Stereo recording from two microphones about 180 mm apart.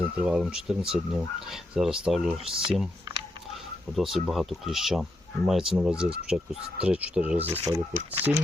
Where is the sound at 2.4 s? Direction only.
30° right (ahead or behind).